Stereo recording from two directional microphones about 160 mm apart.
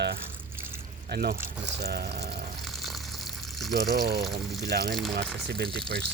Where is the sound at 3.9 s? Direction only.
85° right.